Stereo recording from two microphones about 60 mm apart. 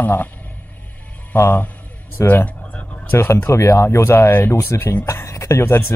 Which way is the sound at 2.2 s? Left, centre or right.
Left.